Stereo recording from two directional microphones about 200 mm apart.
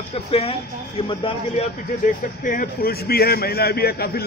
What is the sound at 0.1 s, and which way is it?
Speech, 30° left (ahead or behind).